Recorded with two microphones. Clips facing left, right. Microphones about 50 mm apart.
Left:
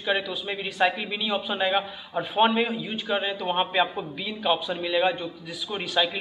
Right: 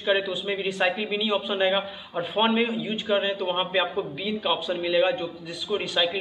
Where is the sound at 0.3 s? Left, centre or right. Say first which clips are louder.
Right 4 dB; centre.